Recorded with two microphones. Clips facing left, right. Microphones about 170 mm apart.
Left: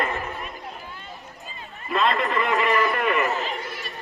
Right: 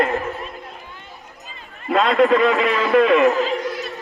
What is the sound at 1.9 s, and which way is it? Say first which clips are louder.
A man's voice: right 8 dB; 90° right.